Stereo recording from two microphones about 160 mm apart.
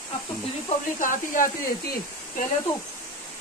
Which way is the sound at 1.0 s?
55° left (ahead or behind).